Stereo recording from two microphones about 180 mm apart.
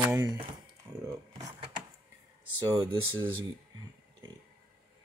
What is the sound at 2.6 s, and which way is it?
Speech, 20° right (ahead or behind).